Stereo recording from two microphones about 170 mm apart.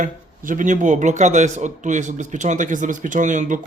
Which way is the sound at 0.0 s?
50° right (ahead or behind).